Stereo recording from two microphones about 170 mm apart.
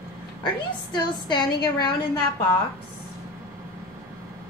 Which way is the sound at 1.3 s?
25° left (ahead or behind).